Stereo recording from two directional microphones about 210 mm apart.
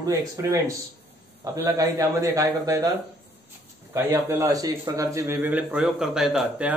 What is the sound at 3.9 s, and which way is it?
Speech, 10° right (ahead or behind).